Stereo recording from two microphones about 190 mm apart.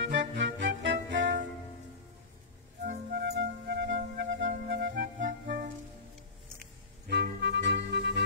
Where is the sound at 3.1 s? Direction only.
60° right (ahead or behind).